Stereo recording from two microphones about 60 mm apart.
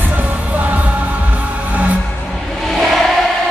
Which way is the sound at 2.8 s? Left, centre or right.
Centre.